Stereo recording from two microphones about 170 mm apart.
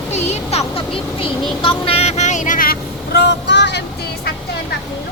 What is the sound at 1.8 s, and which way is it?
Vehicle, 35° left (ahead or behind).